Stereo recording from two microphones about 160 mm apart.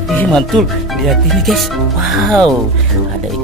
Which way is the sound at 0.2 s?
5° left (ahead or behind).